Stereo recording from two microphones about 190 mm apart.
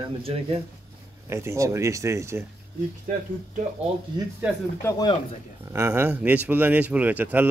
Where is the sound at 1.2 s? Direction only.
15° right (ahead or behind).